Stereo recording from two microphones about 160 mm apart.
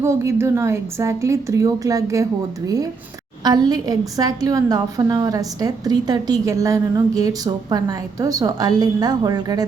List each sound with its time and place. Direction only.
0.0 s a woman's voice: 20° right (ahead or behind)
3.4 s a woman's voice: 25° right (ahead or behind)